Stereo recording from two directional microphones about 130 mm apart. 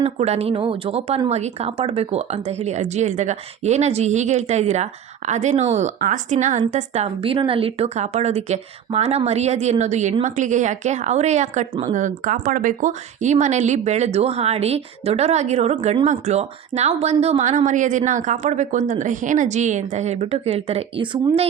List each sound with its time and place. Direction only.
0.0 s a woman's voice: 50° right (ahead or behind)
11.9 s speech: 80° right; by 17.6 s 60° right (ahead or behind)
17.7 s speech: 75° right (ahead or behind); by 21.4 s 45° right (ahead or behind)